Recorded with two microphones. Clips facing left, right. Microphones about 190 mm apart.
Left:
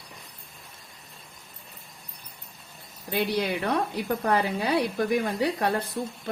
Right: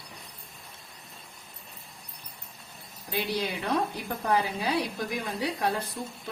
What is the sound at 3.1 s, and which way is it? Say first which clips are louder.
A woman's voice: left 4 dB; 60° left (ahead or behind).